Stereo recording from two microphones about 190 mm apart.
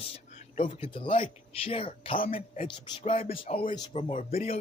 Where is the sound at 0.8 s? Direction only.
30° left (ahead or behind).